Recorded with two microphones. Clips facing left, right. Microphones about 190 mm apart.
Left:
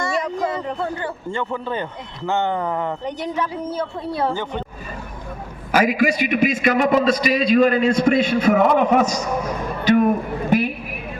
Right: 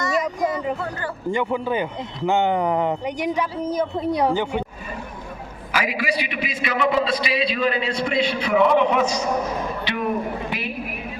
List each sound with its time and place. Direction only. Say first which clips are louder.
0.0 s a sound: even; 30° left (ahead or behind)
1.3 s speech: right 4 dB; 15° right (ahead or behind)
5.7 s a man's voice: left 7 dB; 45° left (ahead or behind)